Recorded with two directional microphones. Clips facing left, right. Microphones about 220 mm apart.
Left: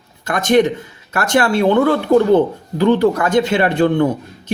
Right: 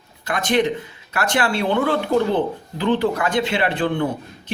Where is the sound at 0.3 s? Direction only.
45° left (ahead or behind).